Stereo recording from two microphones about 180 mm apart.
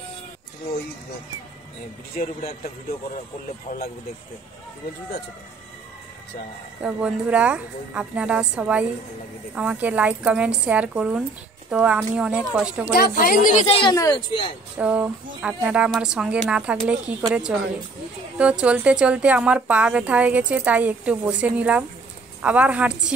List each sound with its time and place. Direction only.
6.8 s a woman's voice: 5° right (ahead or behind)
12.9 s speech: 55° left (ahead or behind)
13.7 s a woman's voice: 25° left (ahead or behind)
14.8 s a woman's voice: 5° right (ahead or behind)